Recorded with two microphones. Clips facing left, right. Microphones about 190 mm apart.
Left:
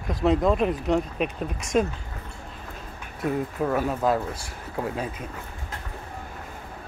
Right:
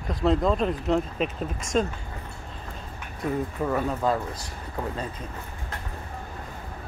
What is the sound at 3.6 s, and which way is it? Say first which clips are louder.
Speech: left 2 dB; 5° left (ahead or behind).